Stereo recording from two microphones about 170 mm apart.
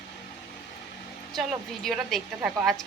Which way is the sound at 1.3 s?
Centre (ahead or behind).